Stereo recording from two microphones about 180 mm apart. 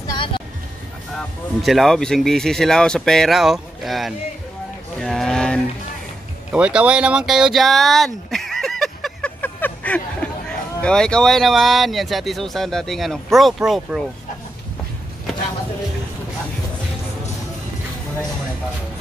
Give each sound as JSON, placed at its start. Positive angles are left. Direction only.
{"t": 0.0, "sound": "music", "side_deg": 25}
{"t": 1.1, "sound": "speech", "side_deg": 0}
{"t": 6.5, "sound": "a sound", "side_deg": -5}
{"t": 10.8, "sound": "speech", "side_deg": 5}